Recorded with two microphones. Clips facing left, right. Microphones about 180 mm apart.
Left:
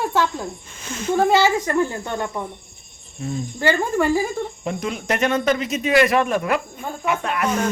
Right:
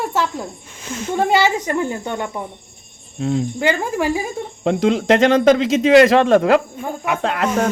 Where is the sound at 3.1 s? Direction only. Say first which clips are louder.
Right 7 dB; 75° right (ahead or behind).